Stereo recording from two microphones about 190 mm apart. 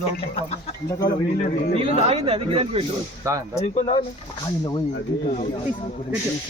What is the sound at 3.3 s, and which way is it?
Speech, 15° right (ahead or behind).